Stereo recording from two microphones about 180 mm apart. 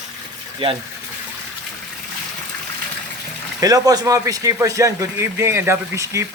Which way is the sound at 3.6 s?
20° right (ahead or behind).